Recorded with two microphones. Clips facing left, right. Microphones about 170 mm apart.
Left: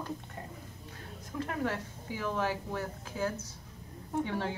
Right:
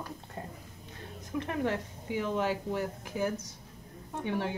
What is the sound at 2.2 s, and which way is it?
Speech, 20° right (ahead or behind).